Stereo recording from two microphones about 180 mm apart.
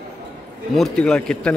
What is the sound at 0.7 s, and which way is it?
Speech, centre (ahead or behind).